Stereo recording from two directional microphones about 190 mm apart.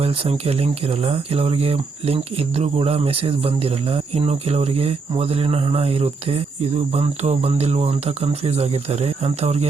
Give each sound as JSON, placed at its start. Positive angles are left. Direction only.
{"t": 0.0, "sound": "speech", "side_deg": -30}